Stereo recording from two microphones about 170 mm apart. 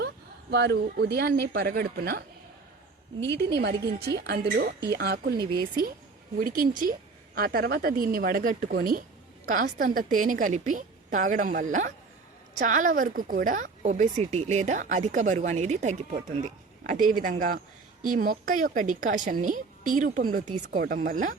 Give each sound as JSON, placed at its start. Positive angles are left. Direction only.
{"t": 0.5, "sound": "speech", "side_deg": -80}
{"t": 3.8, "sound": "a woman's voice", "side_deg": -65}
{"t": 6.4, "sound": "a woman's voice", "side_deg": -55}